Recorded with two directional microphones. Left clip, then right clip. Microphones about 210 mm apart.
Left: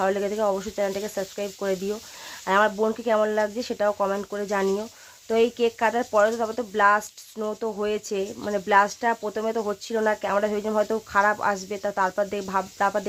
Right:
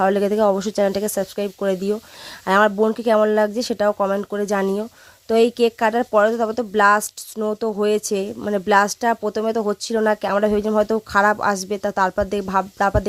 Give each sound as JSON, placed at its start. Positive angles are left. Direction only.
{"t": 0.0, "sound": "speech", "side_deg": -40}